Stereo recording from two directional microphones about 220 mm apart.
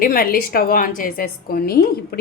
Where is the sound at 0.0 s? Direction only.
40° left (ahead or behind).